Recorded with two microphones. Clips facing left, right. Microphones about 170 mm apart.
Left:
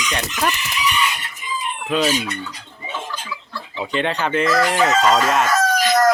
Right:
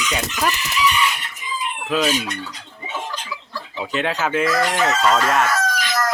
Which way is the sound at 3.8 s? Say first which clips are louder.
Left 1 dB; 5° right (ahead or behind).